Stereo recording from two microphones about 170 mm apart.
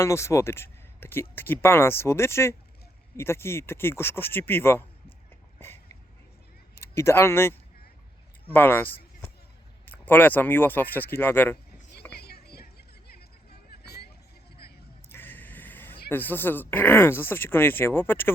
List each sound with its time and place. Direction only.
0.0 s speech: 15° left (ahead or behind)
5.5 s a sound: 15° left (ahead or behind)
6.7 s speech: 15° left (ahead or behind)
8.5 s speech: 10° left (ahead or behind)
12.1 s vehicle: 70° left (ahead or behind)
15.1 s vehicle: 10° left (ahead or behind)
16.0 s speech: 10° left (ahead or behind)